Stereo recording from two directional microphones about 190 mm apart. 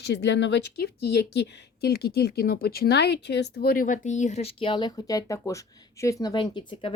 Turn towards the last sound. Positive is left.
turn(degrees=30)  # may be behind; listen again after turning